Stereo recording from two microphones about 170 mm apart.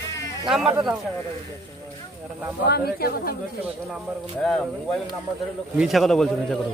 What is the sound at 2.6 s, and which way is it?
Speech, 70° left (ahead or behind).